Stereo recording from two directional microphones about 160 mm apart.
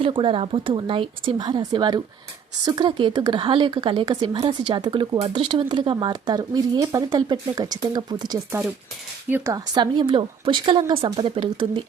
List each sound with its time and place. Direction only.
0.0 s a woman's voice: 35° right (ahead or behind)
9.7 s a woman's voice: 30° right (ahead or behind)